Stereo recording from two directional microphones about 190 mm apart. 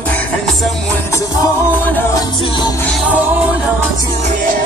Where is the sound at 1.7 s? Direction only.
10° left (ahead or behind).